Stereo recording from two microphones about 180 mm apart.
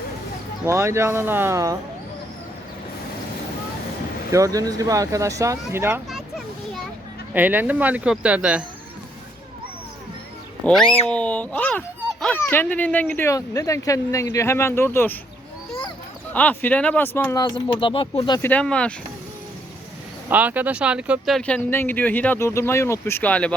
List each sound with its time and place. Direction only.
0.6 s speech: 15° right (ahead or behind)
4.3 s speech: 20° right (ahead or behind)
7.3 s speech: 10° right (ahead or behind)
10.7 s a child's voice: 5° left (ahead or behind)
16.3 s speech: 10° left (ahead or behind)
17.4 s speech: 25° left (ahead or behind)
18.4 s speech: 5° left (ahead or behind)
20.2 s speech: 10° right (ahead or behind); by 23.6 s 5° left (ahead or behind)